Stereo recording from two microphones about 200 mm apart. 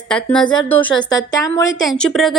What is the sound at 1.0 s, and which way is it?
Speech, 20° left (ahead or behind).